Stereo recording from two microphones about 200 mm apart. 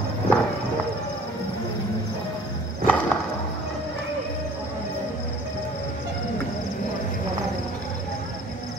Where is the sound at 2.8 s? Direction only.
5° left (ahead or behind).